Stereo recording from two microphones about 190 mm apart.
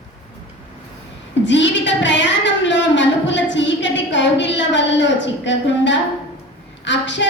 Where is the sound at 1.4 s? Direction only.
70° left (ahead or behind).